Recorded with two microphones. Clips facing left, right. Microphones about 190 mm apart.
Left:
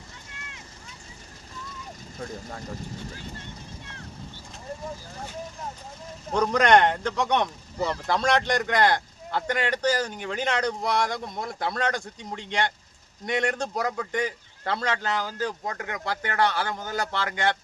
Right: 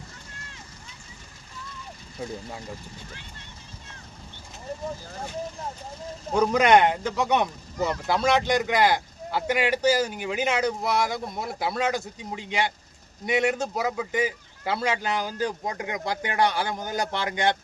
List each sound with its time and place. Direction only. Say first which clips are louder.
3.1 s speech: left 6 dB; 40° left (ahead or behind)
6.3 s a man's voice: right 1 dB; 5° right (ahead or behind)